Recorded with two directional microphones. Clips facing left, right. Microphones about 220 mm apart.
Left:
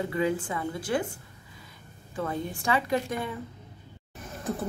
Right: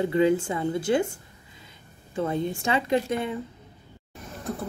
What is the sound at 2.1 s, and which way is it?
A woman's voice, 25° right (ahead or behind).